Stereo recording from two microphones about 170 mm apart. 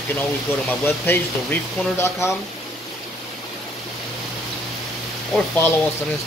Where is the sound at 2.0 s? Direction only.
15° left (ahead or behind).